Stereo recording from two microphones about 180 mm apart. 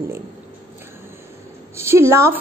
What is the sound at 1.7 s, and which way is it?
Mantra, 15° right (ahead or behind).